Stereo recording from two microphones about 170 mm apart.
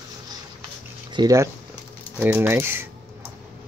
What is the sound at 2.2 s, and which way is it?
Speech, 10° right (ahead or behind).